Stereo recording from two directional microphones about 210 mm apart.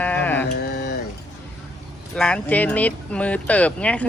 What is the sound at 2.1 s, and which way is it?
Speech, 5° left (ahead or behind).